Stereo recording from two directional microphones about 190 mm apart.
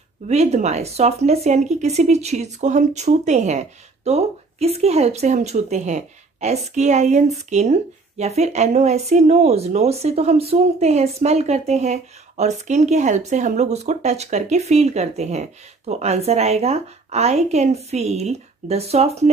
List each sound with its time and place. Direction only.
0.3 s speech: 35° right (ahead or behind)